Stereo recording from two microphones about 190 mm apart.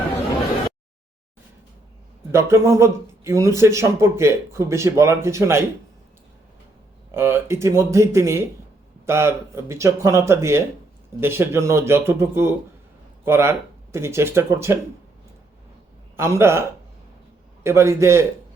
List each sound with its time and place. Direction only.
2.3 s speech: 15° right (ahead or behind)
7.1 s speech: 10° right (ahead or behind)
16.1 s speech: 15° right (ahead or behind)